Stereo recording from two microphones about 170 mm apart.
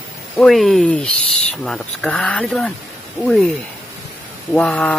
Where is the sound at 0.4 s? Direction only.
Centre (ahead or behind).